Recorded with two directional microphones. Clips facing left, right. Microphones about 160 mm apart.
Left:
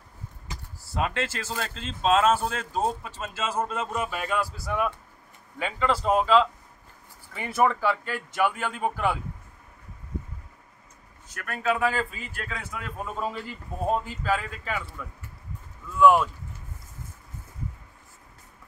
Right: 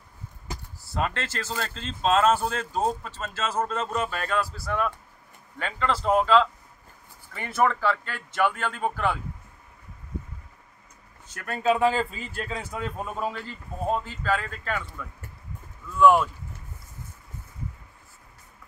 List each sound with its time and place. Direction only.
0.9 s speech: 5° left (ahead or behind)
11.3 s speech: 30° right (ahead or behind)
13.3 s speech: 10° left (ahead or behind)